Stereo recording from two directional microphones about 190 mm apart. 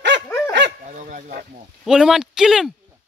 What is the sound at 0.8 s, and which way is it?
Speech, 40° right (ahead or behind).